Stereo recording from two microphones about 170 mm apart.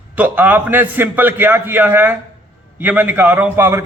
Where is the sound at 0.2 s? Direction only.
10° right (ahead or behind).